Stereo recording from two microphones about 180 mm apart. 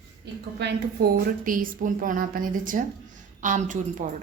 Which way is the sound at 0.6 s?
70° right (ahead or behind).